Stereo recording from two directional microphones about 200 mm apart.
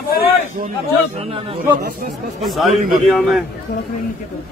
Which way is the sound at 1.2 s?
30° right (ahead or behind).